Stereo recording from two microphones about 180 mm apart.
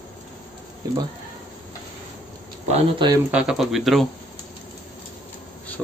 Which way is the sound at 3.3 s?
5° right (ahead or behind).